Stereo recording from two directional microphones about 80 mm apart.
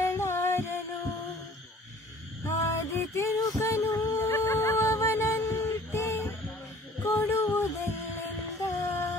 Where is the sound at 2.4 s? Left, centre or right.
Left.